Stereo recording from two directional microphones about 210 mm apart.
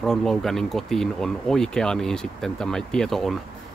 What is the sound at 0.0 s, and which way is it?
Speech, centre (ahead or behind).